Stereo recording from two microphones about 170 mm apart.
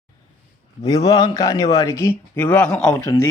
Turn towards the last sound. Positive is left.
turn(degrees=20)  # may be behind; listen again after turning